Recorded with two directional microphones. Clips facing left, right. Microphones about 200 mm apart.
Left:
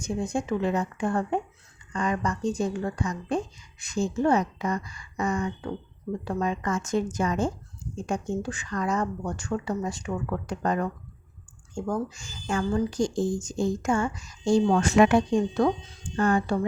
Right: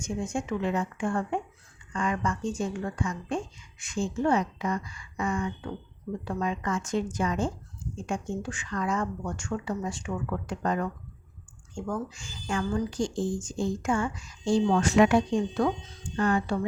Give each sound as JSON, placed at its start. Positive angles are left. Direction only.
{"t": 0.0, "sound": "a woman's voice", "side_deg": 35}